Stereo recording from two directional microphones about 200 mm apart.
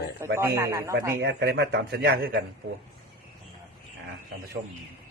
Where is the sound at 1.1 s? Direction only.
55° right (ahead or behind).